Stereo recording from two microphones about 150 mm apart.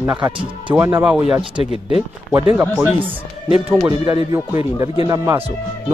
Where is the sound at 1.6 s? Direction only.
40° left (ahead or behind).